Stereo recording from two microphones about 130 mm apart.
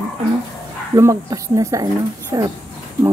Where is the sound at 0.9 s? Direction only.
25° right (ahead or behind).